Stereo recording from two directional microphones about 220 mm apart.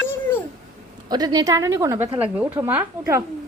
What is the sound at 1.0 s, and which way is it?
A woman's voice, 15° right (ahead or behind).